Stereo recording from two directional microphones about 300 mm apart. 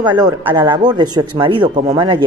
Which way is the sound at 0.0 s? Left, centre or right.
Centre.